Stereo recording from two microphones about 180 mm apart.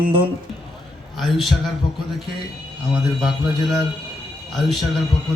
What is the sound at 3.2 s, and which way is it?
A man's voice, centre (ahead or behind).